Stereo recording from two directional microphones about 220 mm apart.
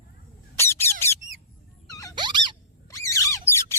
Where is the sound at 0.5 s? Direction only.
10° left (ahead or behind).